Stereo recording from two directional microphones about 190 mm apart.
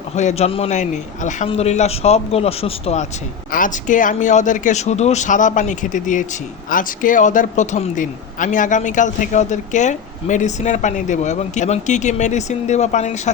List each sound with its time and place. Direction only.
0.2 s speech: 35° left (ahead or behind)
3.5 s speech: 45° left (ahead or behind)